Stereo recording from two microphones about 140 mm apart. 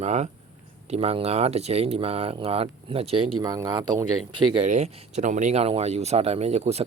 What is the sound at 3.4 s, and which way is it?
Speech, 25° right (ahead or behind).